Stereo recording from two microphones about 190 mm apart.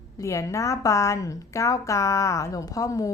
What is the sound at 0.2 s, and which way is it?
A woman's voice, 15° left (ahead or behind).